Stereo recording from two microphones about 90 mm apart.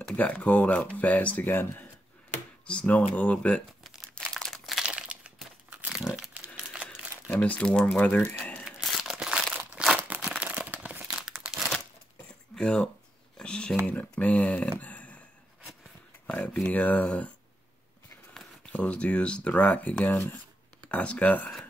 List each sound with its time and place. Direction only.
0.1 s speech: 15° left (ahead or behind)
2.6 s speech: 10° left (ahead or behind)
4.1 s crumpling: 10° left (ahead or behind)
4.8 s crumpling: 10° right (ahead or behind)
7.3 s speech: 15° left (ahead or behind)
8.6 s crumpling: 5° right (ahead or behind)
9.9 s crumpling: 20° right (ahead or behind)
12.5 s speech: 5° left (ahead or behind)
14.8 s a sound: 15° left (ahead or behind)
16.3 s a sound: 15° left (ahead or behind)
16.6 s speech: 15° left (ahead or behind)
18.7 s speech: 15° left (ahead or behind)